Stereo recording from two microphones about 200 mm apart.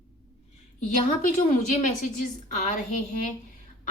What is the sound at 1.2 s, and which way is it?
Speech, 40° left (ahead or behind).